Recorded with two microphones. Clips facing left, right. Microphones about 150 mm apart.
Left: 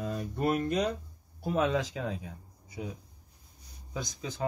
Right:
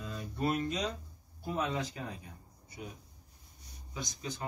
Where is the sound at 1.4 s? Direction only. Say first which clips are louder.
Left 6 dB; 90° left.